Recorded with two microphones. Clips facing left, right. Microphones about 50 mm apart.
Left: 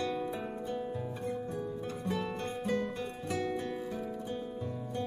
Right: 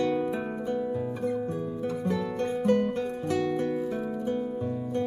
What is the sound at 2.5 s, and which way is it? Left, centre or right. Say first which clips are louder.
Music: right 14 dB; right.